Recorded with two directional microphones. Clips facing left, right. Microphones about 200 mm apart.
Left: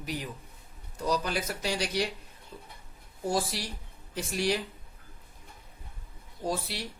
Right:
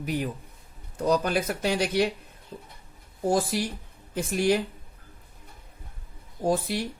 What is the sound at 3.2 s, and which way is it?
Speech, 50° right (ahead or behind).